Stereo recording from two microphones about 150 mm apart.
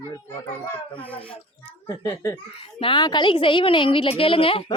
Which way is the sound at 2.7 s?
35° left (ahead or behind).